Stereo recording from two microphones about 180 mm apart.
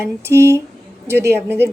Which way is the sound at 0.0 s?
15° right (ahead or behind).